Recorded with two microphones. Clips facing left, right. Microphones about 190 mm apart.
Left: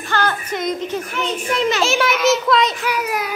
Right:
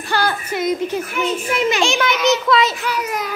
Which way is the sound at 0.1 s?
10° right (ahead or behind).